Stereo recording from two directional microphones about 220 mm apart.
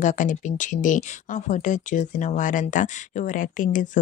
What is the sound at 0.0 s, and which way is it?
Speech, 35° left (ahead or behind).